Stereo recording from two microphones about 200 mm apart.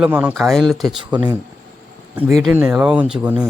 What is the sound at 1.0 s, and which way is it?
Speech, 20° right (ahead or behind).